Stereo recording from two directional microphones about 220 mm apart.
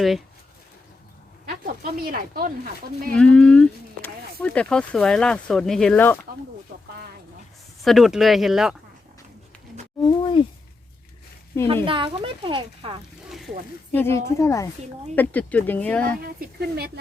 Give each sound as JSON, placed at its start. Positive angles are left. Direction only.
{"t": 1.5, "sound": "speech", "side_deg": -40}
{"t": 3.1, "sound": "speech", "side_deg": 5}
{"t": 7.9, "sound": "speech", "side_deg": 0}
{"t": 10.0, "sound": "a sound", "side_deg": 20}
{"t": 11.9, "sound": "speech", "side_deg": -25}
{"t": 13.2, "sound": "a sound", "side_deg": 0}
{"t": 13.9, "sound": "speech", "side_deg": 10}
{"t": 16.0, "sound": "speech", "side_deg": -40}